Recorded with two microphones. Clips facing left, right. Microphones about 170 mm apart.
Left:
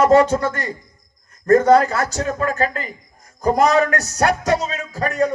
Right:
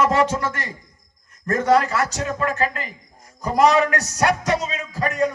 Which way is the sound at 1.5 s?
40° left (ahead or behind).